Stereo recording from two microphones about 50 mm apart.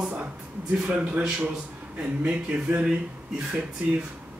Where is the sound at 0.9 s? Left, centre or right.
Right.